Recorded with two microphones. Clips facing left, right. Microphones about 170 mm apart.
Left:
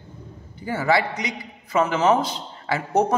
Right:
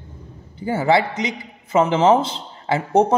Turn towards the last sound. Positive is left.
turn(degrees=-25)  # may be behind; listen again after turning